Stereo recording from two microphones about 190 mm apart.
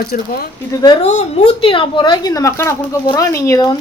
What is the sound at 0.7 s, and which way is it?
Speech, 20° left (ahead or behind).